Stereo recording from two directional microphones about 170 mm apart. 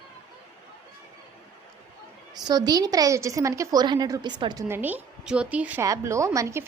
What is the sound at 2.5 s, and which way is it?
A woman's voice, 25° right (ahead or behind).